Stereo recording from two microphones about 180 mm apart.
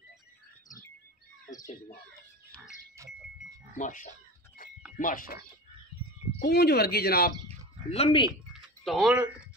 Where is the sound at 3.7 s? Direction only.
45° left (ahead or behind).